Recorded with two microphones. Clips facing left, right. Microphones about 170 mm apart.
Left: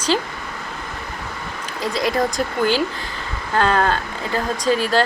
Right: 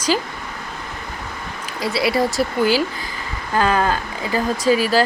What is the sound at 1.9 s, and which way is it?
Speech, 10° right (ahead or behind).